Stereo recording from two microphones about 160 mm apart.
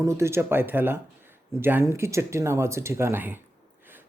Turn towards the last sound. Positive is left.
turn(degrees=-10)  # may be behind; listen again after turning